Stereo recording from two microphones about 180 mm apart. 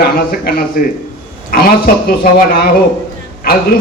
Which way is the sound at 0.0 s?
55° left (ahead or behind).